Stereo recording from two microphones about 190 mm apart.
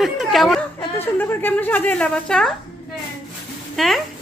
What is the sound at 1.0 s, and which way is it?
A woman's voice, 10° left (ahead or behind).